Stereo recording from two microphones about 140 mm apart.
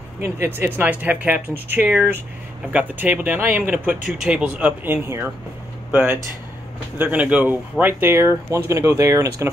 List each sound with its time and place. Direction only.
0.2 s speech: 15° right (ahead or behind)